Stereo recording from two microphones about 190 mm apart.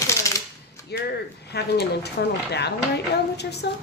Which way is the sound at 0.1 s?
15° left (ahead or behind).